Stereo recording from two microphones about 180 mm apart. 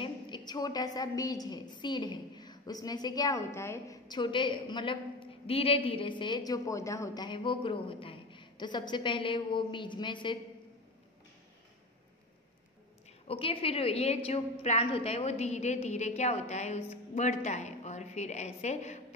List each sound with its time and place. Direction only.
0.0 s a woman's voice: 25° left (ahead or behind)
13.3 s a woman's voice: 30° left (ahead or behind)